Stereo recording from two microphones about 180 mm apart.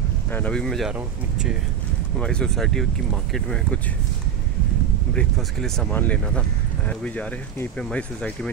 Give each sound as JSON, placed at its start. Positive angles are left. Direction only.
{"t": 0.3, "sound": "speech", "side_deg": 5}
{"t": 5.1, "sound": "speech", "side_deg": 5}